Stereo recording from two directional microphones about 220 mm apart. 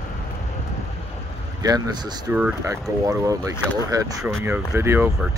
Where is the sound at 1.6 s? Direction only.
15° right (ahead or behind).